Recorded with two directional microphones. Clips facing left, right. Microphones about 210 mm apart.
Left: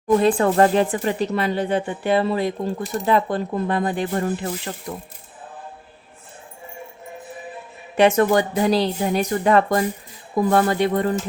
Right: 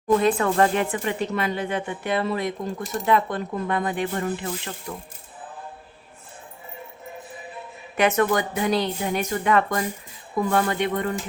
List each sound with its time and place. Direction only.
0.2 s speech: 30° left (ahead or behind)
7.9 s speech: 30° left (ahead or behind)